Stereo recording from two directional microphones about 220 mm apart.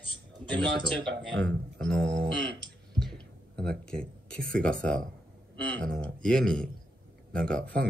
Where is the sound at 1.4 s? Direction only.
5° left (ahead or behind).